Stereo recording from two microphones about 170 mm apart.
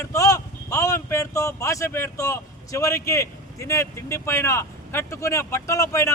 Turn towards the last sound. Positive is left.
turn(degrees=20)  # may be behind; listen again after turning